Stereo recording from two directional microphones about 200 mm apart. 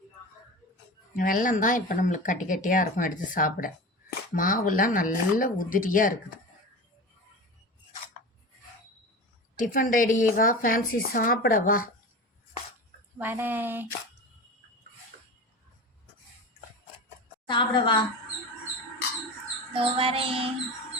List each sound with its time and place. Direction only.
1.1 s a woman's voice: 40° left (ahead or behind)
9.6 s a woman's voice: 40° left (ahead or behind)
13.1 s speech: 10° right (ahead or behind)
17.4 s a woman's voice: 25° left (ahead or behind)
19.7 s child singing: 30° right (ahead or behind)